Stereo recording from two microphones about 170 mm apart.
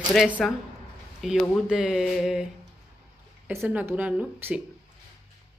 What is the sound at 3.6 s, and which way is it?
A woman's voice, 10° right (ahead or behind).